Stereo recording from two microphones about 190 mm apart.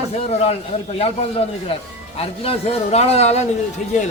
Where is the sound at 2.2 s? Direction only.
30° left (ahead or behind).